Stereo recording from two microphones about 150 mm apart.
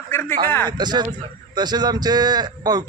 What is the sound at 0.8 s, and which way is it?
A man's voice, 30° right (ahead or behind).